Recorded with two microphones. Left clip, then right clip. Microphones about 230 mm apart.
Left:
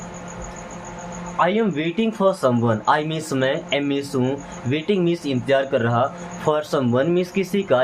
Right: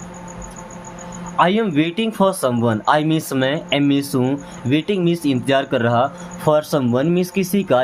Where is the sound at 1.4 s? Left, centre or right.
Right.